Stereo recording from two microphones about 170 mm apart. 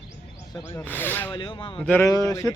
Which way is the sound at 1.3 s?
30° left (ahead or behind).